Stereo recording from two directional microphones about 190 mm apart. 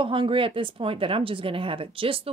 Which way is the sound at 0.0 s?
25° right (ahead or behind).